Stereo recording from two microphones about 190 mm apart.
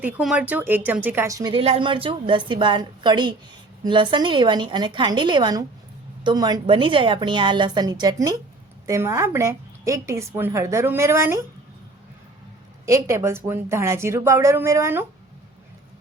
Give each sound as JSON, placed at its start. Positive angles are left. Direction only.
{"t": 0.0, "sound": "a woman's voice", "side_deg": -5}
{"t": 12.8, "sound": "a woman's voice", "side_deg": -15}